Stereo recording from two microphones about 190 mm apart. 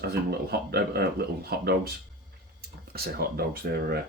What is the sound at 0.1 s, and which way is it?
Speech, 55° right (ahead or behind).